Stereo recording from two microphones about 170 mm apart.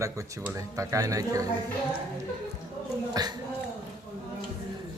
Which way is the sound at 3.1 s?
25° right (ahead or behind).